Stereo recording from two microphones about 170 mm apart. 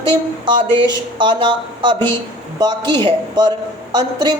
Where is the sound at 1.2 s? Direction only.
30° right (ahead or behind).